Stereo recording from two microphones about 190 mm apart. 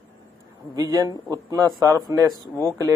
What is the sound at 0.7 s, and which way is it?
Speech, 20° right (ahead or behind).